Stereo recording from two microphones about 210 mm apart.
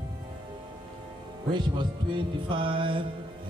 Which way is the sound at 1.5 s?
20° right (ahead or behind).